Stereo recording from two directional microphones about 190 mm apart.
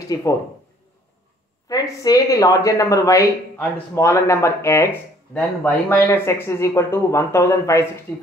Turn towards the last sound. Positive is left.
turn(degrees=15)  # may be behind; listen again after turning